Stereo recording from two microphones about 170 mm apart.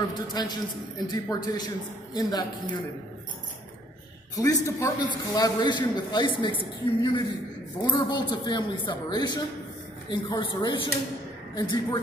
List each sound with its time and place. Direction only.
0.3 s a man's voice: 25° left (ahead or behind)
4.4 s a man's voice: 20° left (ahead or behind)